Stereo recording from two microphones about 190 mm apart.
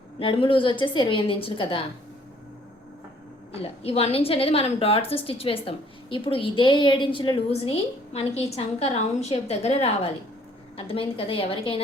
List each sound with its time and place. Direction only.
0.2 s a woman's voice: 25° left (ahead or behind)
3.6 s a woman's voice: 30° left (ahead or behind)